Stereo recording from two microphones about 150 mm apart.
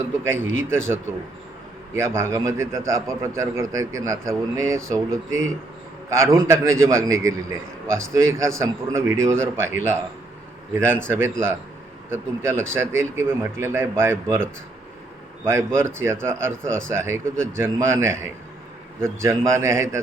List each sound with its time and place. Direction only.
0.0 s speech: 15° right (ahead or behind)
2.0 s a man's voice: 20° right (ahead or behind)
11.1 s a man's voice: 15° right (ahead or behind)